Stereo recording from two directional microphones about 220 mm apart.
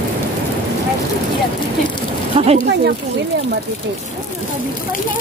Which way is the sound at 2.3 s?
25° right (ahead or behind).